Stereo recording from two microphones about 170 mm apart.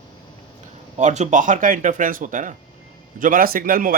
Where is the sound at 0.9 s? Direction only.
45° right (ahead or behind).